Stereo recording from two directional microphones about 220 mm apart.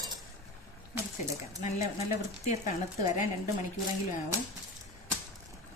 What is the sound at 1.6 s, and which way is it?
Speech, 30° left (ahead or behind).